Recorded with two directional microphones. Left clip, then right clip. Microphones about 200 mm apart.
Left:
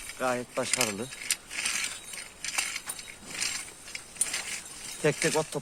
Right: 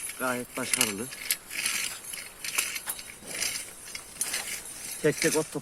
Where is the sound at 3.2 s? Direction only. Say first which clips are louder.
Even; 10° left (ahead or behind).